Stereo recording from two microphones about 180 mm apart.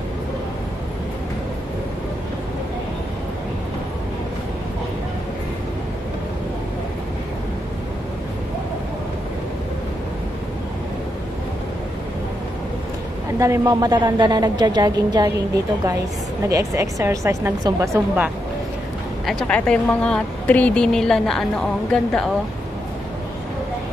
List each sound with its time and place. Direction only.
13.4 s a woman's voice: 20° right (ahead or behind)
16.4 s a woman's voice: 15° right (ahead or behind)
19.2 s a woman's voice: 5° left (ahead or behind)